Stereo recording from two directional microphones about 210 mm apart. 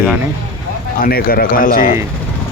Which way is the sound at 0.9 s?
45° left (ahead or behind).